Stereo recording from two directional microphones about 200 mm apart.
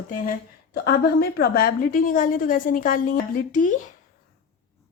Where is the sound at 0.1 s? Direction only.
45° left (ahead or behind).